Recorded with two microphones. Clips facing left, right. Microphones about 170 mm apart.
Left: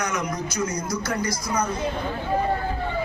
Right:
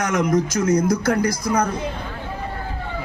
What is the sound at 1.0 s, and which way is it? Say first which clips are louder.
Speech: right 7 dB; 55° right (ahead or behind).